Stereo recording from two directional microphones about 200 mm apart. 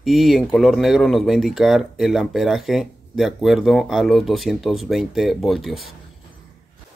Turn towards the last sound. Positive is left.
turn(degrees=0)  # may be behind; listen again after turning